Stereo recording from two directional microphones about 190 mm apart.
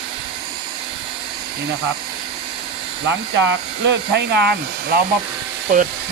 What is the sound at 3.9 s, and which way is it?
Speech, 60° right (ahead or behind).